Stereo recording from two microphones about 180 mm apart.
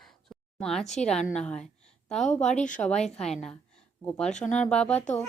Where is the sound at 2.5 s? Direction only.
45° left (ahead or behind).